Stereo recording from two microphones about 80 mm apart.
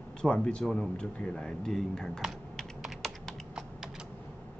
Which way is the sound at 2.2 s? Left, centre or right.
Centre.